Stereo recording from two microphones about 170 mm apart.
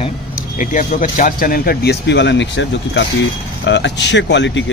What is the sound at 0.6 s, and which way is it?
Speech, 50° left (ahead or behind).